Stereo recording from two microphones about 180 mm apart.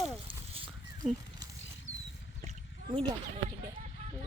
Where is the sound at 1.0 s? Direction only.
5° left (ahead or behind).